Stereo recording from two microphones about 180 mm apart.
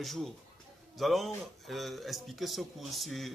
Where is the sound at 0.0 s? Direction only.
Centre (ahead or behind).